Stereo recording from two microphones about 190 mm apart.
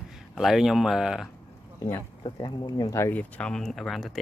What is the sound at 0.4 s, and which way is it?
Speech, centre (ahead or behind).